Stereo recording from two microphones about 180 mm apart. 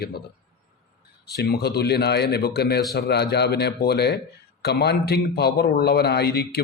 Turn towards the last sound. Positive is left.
turn(degrees=60)  # may be behind; listen again after turning